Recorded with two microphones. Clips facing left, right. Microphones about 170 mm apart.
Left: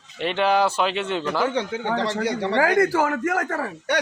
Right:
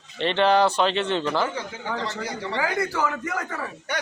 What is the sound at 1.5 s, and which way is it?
Speech, 75° left (ahead or behind).